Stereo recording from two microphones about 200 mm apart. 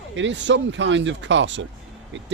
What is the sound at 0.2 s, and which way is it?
Speech, 65° right (ahead or behind).